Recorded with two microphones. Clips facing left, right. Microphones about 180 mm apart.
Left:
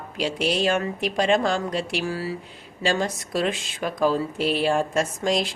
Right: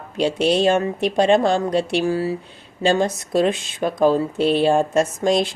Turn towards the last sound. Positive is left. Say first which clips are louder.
# right 5 dB
turn(degrees=-25)  # may be behind; listen again after turning